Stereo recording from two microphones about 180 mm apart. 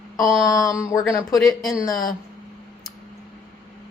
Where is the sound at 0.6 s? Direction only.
20° left (ahead or behind).